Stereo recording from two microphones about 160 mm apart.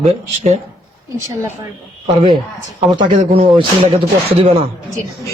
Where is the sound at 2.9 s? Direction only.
30° right (ahead or behind).